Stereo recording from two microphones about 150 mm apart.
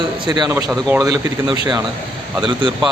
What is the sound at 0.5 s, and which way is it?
Speech, 15° right (ahead or behind).